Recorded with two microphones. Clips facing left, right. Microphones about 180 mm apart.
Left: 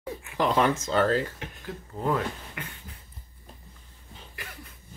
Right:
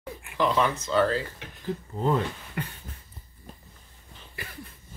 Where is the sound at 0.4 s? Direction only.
45° left (ahead or behind).